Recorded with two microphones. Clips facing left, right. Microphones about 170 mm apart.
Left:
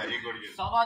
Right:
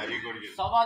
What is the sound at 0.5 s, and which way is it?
Speech, 20° right (ahead or behind).